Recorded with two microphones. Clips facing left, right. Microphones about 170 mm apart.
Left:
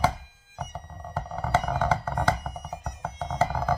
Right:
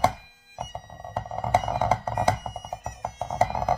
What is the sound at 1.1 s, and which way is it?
Music, 15° right (ahead or behind).